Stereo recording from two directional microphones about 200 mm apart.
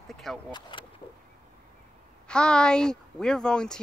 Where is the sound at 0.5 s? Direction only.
20° left (ahead or behind).